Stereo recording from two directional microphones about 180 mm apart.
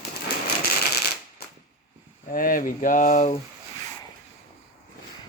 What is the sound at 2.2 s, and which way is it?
Speech, 50° left (ahead or behind).